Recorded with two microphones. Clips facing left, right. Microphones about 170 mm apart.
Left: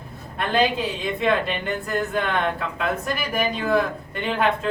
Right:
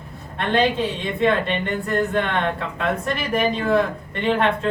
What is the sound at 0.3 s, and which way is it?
Speech, centre (ahead or behind).